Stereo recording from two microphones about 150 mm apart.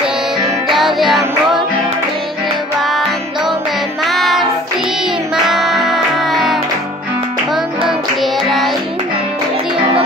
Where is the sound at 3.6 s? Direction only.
Centre (ahead or behind).